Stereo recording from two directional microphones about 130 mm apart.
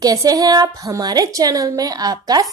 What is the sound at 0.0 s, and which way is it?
A woman's voice, 30° right (ahead or behind).